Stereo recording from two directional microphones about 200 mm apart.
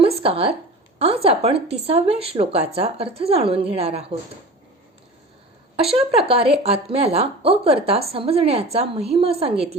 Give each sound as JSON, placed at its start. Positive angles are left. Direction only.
{"t": 0.0, "sound": "a sound", "side_deg": -30}
{"t": 1.0, "sound": "speech", "side_deg": -30}
{"t": 5.7, "sound": "speech", "side_deg": -30}